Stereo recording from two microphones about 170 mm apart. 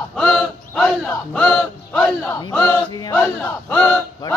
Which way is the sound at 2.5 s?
10° left (ahead or behind).